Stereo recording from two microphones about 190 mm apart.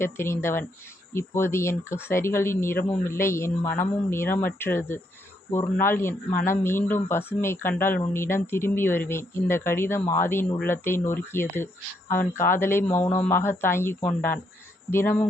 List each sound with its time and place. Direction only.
0.0 s speech: 15° left (ahead or behind)